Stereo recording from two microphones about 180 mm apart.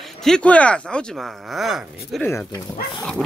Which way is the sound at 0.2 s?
5° left (ahead or behind).